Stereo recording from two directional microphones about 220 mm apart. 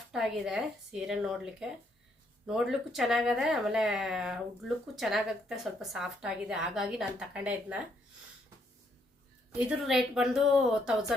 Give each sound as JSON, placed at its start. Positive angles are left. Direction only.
{"t": 0.1, "sound": "a woman's voice", "side_deg": 0}
{"t": 9.5, "sound": "a woman's voice", "side_deg": -5}